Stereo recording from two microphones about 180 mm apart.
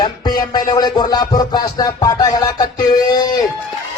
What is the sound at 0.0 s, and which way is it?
Music, 25° left (ahead or behind).